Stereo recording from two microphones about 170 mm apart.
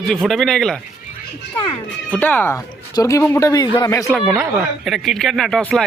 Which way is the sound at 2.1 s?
10° left (ahead or behind).